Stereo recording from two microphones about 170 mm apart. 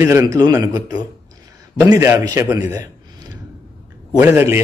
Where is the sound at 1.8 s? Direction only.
15° right (ahead or behind).